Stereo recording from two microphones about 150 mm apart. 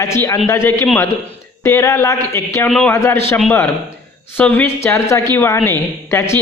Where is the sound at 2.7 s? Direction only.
5° left (ahead or behind).